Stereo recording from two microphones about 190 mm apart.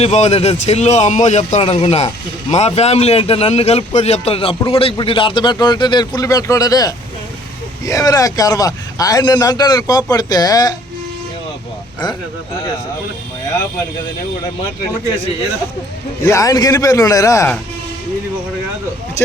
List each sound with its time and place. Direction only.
0.0 s a man's voice: 35° left (ahead or behind); by 10.8 s 20° left (ahead or behind)
16.2 s a man's voice: 15° left (ahead or behind)